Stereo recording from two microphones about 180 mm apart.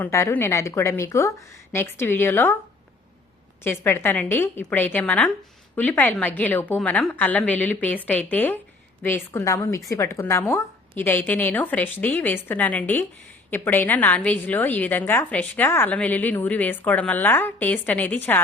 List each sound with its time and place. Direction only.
0.0 s a woman's voice: 15° left (ahead or behind)
3.6 s a woman's voice: 15° left (ahead or behind)